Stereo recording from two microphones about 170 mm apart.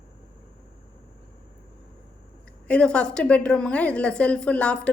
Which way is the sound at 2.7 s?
5° left (ahead or behind).